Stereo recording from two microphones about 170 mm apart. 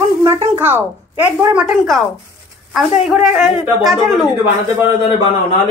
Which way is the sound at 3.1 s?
Centre (ahead or behind).